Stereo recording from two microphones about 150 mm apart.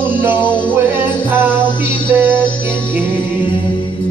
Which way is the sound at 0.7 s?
15° right (ahead or behind).